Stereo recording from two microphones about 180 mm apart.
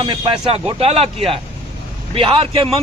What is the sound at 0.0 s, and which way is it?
Speech, 25° right (ahead or behind).